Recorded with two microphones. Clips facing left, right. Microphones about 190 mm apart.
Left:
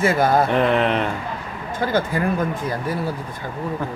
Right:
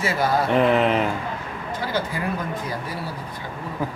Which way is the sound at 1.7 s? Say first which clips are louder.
Left 6 dB; 50° left (ahead or behind).